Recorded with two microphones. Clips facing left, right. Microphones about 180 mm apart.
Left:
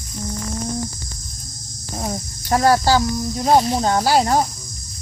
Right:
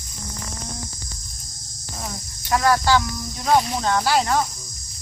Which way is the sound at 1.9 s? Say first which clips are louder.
Left 8 dB; 40° left (ahead or behind).